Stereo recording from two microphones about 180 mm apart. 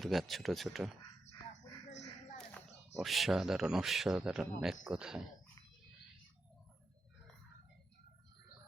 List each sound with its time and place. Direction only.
0.0 s speech: centre (ahead or behind)
1.9 s a sound: 40° left (ahead or behind)
3.0 s speech: centre (ahead or behind)